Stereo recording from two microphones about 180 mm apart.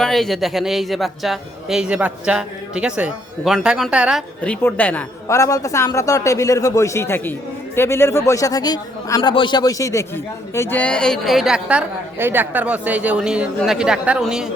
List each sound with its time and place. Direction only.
0.0 s a man's voice: centre (ahead or behind)
4.4 s a woman's voice: 10° left (ahead or behind)